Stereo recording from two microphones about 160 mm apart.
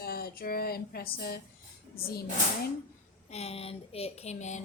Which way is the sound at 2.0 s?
70° left (ahead or behind).